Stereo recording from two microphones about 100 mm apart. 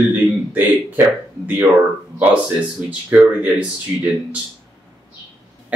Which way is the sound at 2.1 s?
15° right (ahead or behind).